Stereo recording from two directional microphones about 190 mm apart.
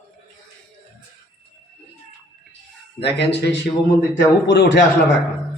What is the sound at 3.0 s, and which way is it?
Speech, 65° left (ahead or behind).